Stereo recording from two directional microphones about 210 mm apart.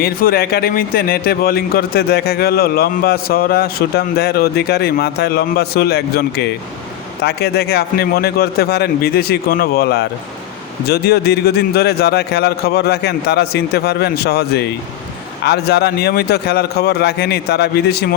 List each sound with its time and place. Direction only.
0.0 s speech: 45° left (ahead or behind)